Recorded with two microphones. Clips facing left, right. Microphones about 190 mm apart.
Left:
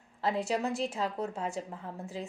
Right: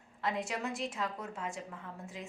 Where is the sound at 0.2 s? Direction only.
35° left (ahead or behind).